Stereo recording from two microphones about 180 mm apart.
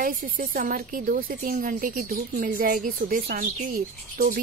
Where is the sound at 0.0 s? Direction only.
50° right (ahead or behind).